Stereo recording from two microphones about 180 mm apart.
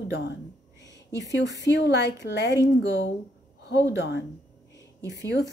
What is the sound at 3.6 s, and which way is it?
Speech, 70° left (ahead or behind).